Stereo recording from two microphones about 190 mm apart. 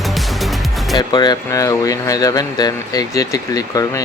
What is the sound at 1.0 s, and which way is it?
Speech, 20° left (ahead or behind).